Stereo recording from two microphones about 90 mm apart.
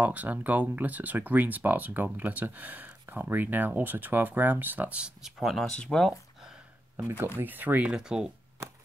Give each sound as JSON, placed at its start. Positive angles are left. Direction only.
{"t": 0.0, "sound": "speech", "side_deg": -15}
{"t": 7.3, "sound": "speech", "side_deg": -20}